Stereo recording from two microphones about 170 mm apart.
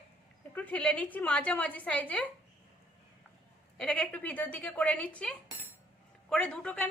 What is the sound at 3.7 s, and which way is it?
A woman's voice, 5° left (ahead or behind).